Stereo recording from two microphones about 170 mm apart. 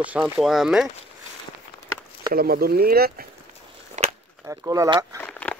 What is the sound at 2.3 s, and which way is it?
Speech, 60° right (ahead or behind).